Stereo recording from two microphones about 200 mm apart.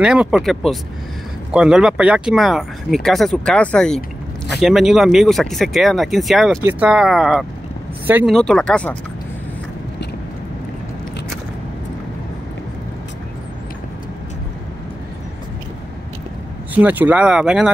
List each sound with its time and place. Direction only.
0.0 s speech: 5° right (ahead or behind)
8.4 s speech: 5° left (ahead or behind)
16.7 s speech: 10° right (ahead or behind)